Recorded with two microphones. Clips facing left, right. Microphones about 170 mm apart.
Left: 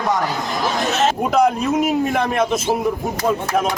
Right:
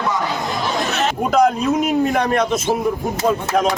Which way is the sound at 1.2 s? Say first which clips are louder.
Right 4 dB; centre (ahead or behind).